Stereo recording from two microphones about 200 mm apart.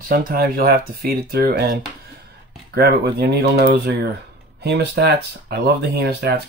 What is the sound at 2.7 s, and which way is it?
Speech, 50° right (ahead or behind).